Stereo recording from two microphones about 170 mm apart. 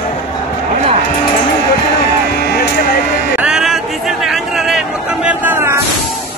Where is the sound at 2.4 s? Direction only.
70° left (ahead or behind).